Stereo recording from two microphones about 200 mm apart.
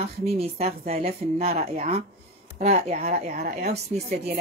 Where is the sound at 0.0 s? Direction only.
30° right (ahead or behind).